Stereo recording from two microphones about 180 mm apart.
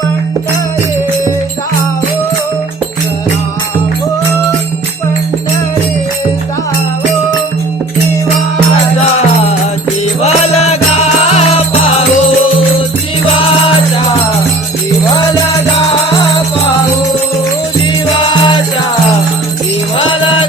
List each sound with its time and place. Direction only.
10.2 s music: 35° left (ahead or behind)
13.4 s music: 30° left (ahead or behind)
18.3 s music: 25° left (ahead or behind)
20.0 s music: 30° left (ahead or behind)